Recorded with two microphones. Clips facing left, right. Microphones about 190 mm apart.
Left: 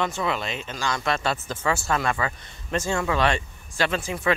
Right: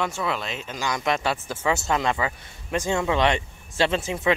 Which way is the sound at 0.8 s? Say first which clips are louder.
Right 1 dB; 15° right (ahead or behind).